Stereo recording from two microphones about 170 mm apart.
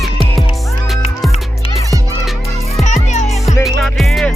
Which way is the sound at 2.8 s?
45° left (ahead or behind).